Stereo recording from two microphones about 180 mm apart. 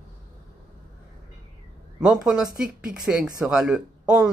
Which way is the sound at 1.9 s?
5° right (ahead or behind).